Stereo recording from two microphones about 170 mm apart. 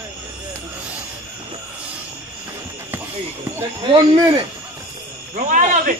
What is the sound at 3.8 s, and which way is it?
Speech, 25° right (ahead or behind).